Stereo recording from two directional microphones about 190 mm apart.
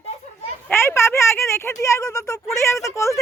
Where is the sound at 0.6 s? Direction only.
15° left (ahead or behind).